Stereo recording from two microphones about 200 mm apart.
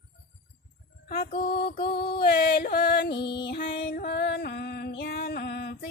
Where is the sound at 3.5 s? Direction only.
45° left (ahead or behind).